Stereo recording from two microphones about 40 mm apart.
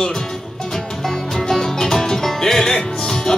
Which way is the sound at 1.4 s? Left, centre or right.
Centre.